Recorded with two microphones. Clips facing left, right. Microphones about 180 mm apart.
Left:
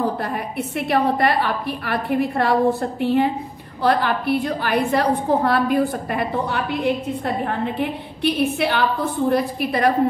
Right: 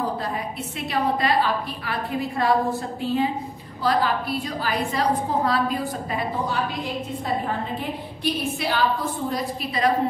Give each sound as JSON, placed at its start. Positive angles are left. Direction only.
{"t": 0.2, "sound": "a woman's voice", "side_deg": 60}